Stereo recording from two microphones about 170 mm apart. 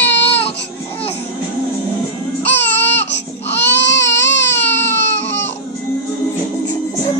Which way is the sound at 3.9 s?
90° left.